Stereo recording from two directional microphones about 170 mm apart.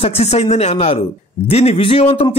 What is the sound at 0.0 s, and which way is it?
A man's voice, 40° left (ahead or behind).